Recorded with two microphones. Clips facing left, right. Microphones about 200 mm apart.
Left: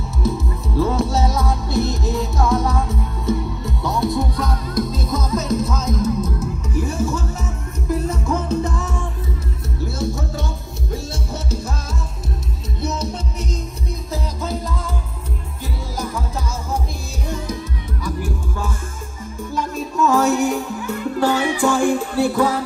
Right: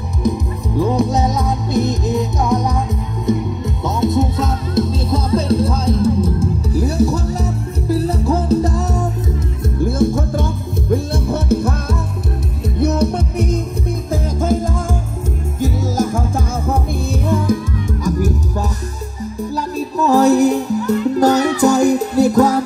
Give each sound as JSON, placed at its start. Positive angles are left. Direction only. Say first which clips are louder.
{"t": 0.2, "sound": "music", "louder": "right 4 dB", "side_deg": -15}
{"t": 9.8, "sound": "music", "louder": "right 9 dB", "side_deg": -50}
{"t": 18.0, "sound": "music", "louder": "right 6 dB", "side_deg": -40}